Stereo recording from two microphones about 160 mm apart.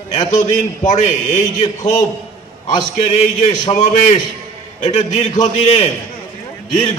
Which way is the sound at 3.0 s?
45° left (ahead or behind).